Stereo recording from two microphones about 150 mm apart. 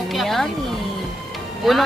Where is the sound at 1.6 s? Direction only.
Centre (ahead or behind).